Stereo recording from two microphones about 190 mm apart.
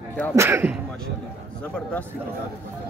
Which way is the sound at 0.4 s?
15° right (ahead or behind).